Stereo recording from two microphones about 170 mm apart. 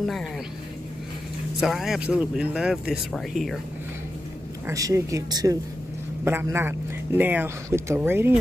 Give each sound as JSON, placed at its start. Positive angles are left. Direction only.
{"t": 0.0, "sound": "speech", "side_deg": 0}
{"t": 1.6, "sound": "speech", "side_deg": 0}
{"t": 4.6, "sound": "speech", "side_deg": -20}